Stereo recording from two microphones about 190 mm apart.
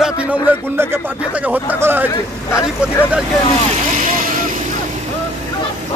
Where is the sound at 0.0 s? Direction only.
10° right (ahead or behind).